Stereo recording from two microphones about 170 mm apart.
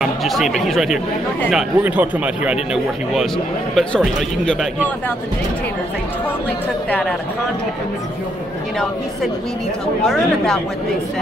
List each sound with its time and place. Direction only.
0.0 s speech: centre (ahead or behind)
6.9 s speech: 5° left (ahead or behind)
10.0 s speech: 5° left (ahead or behind)